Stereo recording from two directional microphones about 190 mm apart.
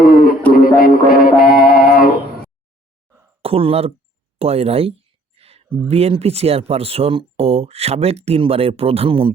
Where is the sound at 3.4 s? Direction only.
30° right (ahead or behind).